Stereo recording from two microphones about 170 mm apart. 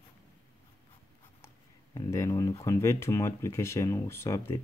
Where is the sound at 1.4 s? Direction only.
15° left (ahead or behind).